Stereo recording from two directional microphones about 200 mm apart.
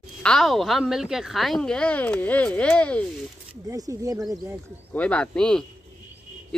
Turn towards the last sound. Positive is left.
turn(degrees=5)  # may be behind; listen again after turning